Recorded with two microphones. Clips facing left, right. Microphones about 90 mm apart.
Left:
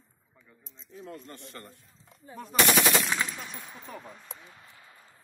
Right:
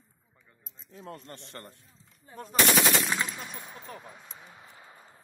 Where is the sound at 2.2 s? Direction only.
Centre (ahead or behind).